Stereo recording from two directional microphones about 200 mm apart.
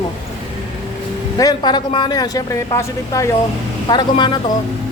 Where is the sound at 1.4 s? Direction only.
20° left (ahead or behind).